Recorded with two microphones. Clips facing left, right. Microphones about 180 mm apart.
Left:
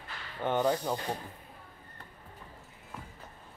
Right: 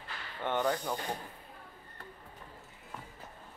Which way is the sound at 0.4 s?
15° left (ahead or behind).